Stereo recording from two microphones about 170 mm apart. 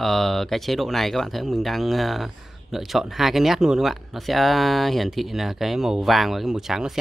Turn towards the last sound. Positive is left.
turn(degrees=0)  # may be behind; listen again after turning